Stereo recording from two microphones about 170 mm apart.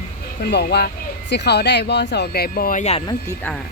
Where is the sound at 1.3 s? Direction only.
80° left; by 2.8 s 60° left (ahead or behind).